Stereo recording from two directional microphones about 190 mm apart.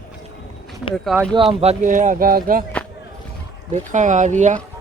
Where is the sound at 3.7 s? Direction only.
40° right (ahead or behind).